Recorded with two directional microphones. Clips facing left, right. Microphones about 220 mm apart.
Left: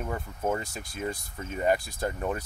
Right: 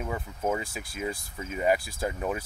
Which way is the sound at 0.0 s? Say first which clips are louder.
Even; 5° right (ahead or behind).